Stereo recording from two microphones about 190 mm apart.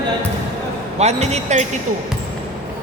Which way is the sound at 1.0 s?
35° right (ahead or behind).